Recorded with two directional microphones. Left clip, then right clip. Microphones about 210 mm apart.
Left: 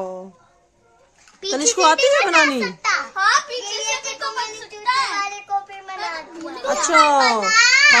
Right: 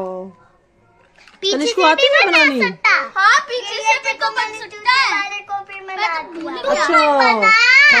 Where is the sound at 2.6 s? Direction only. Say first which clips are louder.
Right 6 dB; 25° right (ahead or behind).